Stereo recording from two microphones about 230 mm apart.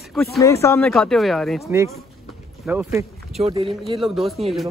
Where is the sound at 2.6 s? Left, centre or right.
Centre.